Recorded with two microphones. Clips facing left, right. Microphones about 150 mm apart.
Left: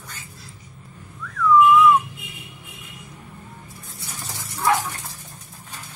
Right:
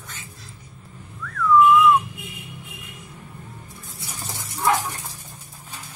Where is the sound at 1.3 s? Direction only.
Centre (ahead or behind).